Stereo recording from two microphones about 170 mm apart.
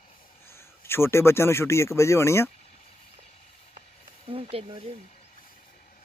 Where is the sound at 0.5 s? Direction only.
15° left (ahead or behind).